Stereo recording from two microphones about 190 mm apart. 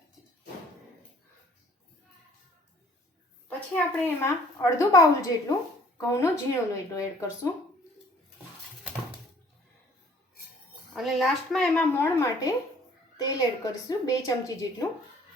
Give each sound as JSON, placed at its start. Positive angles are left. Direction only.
{"t": 3.8, "sound": "a woman's voice", "side_deg": 10}
{"t": 10.9, "sound": "a woman's voice", "side_deg": 0}